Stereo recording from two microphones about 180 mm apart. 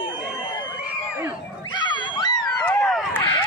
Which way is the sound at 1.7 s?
25° left (ahead or behind).